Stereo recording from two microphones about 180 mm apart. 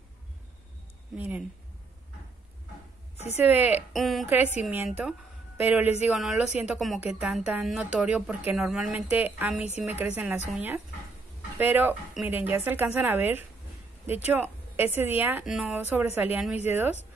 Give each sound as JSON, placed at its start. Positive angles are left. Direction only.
{"t": 1.1, "sound": "speech", "side_deg": -10}
{"t": 3.2, "sound": "a woman's voice", "side_deg": 35}
{"t": 3.4, "sound": "speech", "side_deg": -10}